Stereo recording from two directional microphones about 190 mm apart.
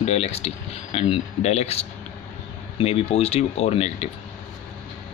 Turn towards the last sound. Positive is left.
turn(degrees=35)  # may be behind; listen again after turning